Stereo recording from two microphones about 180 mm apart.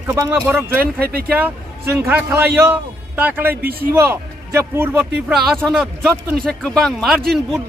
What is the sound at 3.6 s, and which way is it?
Speech, 55° right (ahead or behind).